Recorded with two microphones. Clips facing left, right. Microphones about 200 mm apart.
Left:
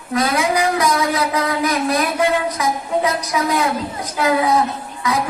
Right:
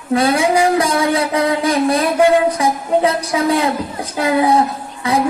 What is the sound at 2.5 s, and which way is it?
A woman's voice, 30° right (ahead or behind).